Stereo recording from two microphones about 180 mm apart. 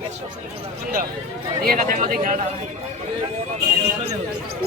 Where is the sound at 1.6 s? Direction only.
50° right (ahead or behind).